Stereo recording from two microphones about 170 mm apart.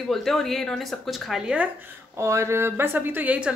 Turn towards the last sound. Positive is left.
turn(degrees=-10)  # may be behind; listen again after turning